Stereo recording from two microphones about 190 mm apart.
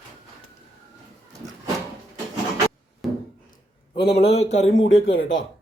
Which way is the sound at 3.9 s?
30° left (ahead or behind).